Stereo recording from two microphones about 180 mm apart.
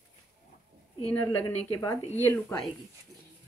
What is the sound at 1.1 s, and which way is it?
A woman's voice, 10° left (ahead or behind).